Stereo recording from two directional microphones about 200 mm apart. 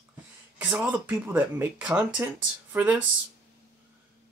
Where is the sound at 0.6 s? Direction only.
5° right (ahead or behind).